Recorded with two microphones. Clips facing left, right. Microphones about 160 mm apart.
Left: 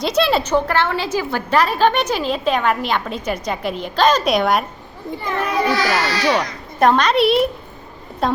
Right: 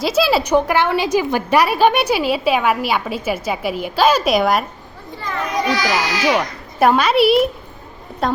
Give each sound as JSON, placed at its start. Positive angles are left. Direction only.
{"t": 0.0, "sound": "a child's voice", "side_deg": -5}
{"t": 5.8, "sound": "a child's voice", "side_deg": 0}